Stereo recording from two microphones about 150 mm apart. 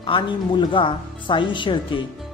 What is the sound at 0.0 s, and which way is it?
Speech, 35° left (ahead or behind).